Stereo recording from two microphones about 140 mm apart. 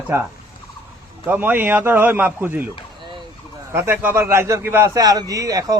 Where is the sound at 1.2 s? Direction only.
15° right (ahead or behind).